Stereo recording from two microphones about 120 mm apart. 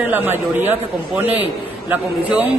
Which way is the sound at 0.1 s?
15° right (ahead or behind).